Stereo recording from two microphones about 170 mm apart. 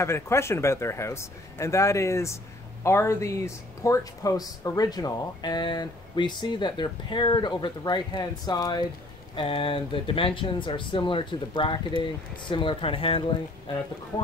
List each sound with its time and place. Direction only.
0.0 s speech: 15° left (ahead or behind); by 13.2 s 35° left (ahead or behind)